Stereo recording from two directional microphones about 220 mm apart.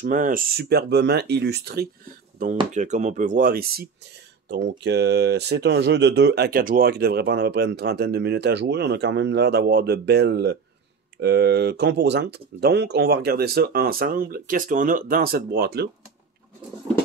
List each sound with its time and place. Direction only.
0.0 s speech: 35° right (ahead or behind)